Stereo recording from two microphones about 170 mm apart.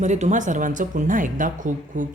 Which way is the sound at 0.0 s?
45° right (ahead or behind).